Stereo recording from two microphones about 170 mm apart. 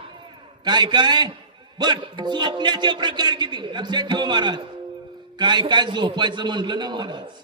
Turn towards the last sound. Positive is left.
turn(degrees=-25)  # may be behind; listen again after turning